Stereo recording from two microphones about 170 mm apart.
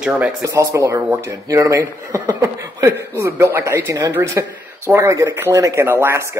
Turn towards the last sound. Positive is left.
turn(degrees=-15)  # may be behind; listen again after turning